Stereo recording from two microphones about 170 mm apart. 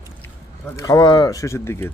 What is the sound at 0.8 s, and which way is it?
Speech, 20° left (ahead or behind).